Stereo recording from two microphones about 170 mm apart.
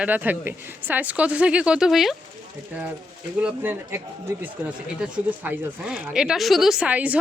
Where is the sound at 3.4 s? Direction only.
10° right (ahead or behind).